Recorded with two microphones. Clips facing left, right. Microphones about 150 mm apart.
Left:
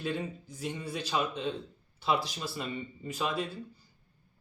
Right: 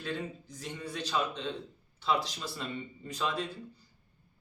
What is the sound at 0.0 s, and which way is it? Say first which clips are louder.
Speech: left 3 dB; 10° left (ahead or behind).